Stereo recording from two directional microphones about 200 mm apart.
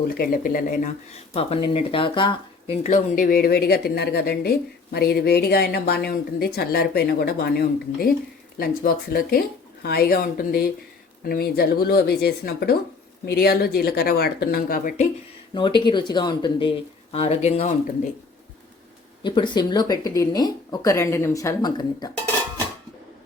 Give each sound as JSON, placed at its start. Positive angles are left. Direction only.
{"t": 0.1, "sound": "speech", "side_deg": 45}
{"t": 15.5, "sound": "speech", "side_deg": 25}
{"t": 19.2, "sound": "speech", "side_deg": 20}